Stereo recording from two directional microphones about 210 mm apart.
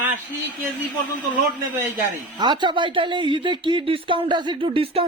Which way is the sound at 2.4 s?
20° right (ahead or behind).